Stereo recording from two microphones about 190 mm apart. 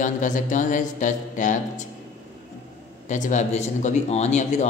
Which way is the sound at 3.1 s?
40° left (ahead or behind).